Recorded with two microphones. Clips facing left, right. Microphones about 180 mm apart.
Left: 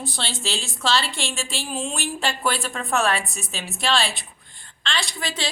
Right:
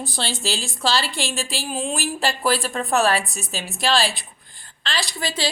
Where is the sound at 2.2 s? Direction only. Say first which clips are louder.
Right 3 dB; 35° right (ahead or behind).